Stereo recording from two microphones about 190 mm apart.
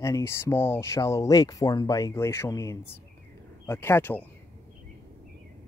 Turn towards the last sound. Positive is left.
turn(degrees=10)  # may be behind; listen again after turning